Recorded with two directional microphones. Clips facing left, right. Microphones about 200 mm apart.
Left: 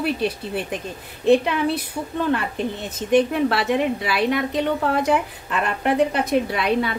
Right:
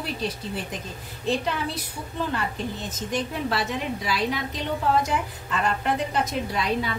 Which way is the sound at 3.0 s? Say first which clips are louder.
Left 10 dB; 60° left (ahead or behind).